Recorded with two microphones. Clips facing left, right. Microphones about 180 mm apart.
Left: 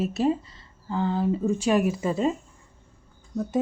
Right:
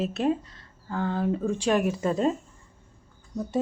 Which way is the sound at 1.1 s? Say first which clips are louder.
Left 2 dB; 5° left (ahead or behind).